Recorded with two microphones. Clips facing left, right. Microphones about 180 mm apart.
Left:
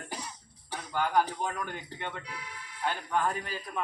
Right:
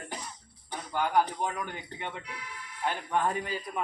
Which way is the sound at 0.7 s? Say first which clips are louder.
Right 1 dB; 10° right (ahead or behind).